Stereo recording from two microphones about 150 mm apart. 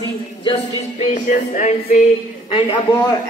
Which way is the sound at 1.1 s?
55° left (ahead or behind).